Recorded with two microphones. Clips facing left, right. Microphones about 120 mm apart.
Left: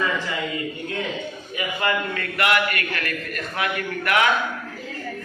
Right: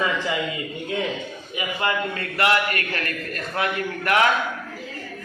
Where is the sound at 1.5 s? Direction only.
25° right (ahead or behind).